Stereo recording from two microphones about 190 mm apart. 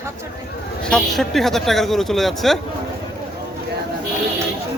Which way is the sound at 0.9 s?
Centre (ahead or behind).